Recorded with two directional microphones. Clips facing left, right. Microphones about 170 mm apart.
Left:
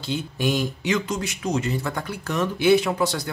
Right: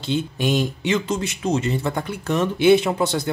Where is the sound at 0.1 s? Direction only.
25° right (ahead or behind).